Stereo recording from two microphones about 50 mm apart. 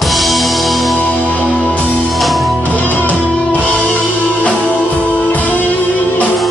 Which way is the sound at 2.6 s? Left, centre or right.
Left.